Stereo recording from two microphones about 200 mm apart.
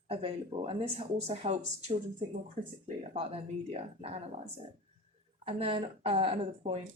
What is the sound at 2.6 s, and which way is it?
Speech, 35° right (ahead or behind).